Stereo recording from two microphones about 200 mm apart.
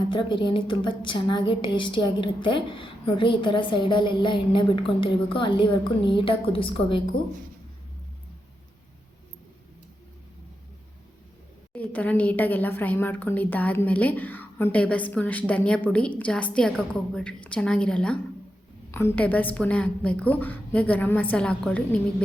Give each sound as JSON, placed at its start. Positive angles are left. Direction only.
{"t": 0.1, "sound": "a woman's voice", "side_deg": 25}
{"t": 11.7, "sound": "speech", "side_deg": 10}